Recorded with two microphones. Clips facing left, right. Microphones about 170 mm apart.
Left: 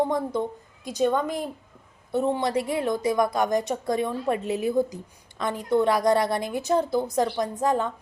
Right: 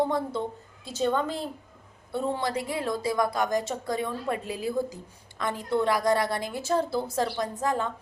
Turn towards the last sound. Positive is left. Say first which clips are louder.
# left 4 dB
turn(degrees=20)  # may be behind; listen again after turning